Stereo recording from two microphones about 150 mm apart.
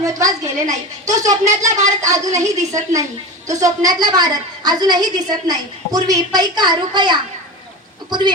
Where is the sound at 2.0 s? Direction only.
25° right (ahead or behind).